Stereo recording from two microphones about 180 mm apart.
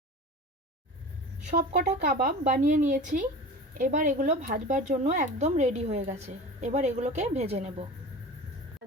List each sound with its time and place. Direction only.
1.5 s speech: 45° right (ahead or behind)